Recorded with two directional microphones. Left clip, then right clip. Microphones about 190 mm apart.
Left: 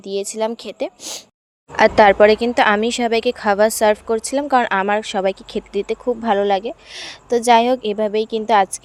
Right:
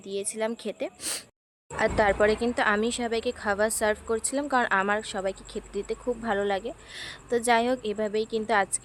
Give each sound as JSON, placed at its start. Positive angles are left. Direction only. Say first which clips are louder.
{"t": 0.0, "sound": "speech", "louder": "left 9 dB", "side_deg": 25}
{"t": 1.7, "sound": "speech", "louder": "left 12 dB", "side_deg": 40}